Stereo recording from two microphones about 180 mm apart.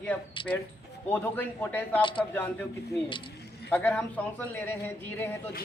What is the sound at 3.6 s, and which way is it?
Speech, 10° left (ahead or behind).